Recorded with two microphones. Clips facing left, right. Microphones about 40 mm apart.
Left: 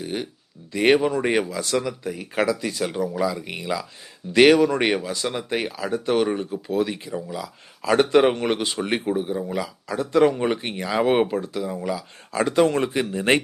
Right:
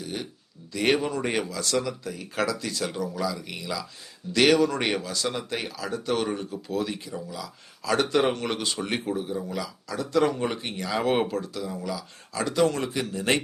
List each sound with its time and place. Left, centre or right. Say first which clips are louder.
0.0 s speech: left 5 dB; left